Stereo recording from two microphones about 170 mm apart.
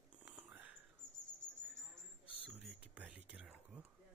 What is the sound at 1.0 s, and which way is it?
Bird, 45° left (ahead or behind).